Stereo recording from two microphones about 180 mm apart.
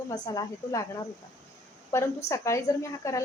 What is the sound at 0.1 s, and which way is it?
Speech, 20° left (ahead or behind).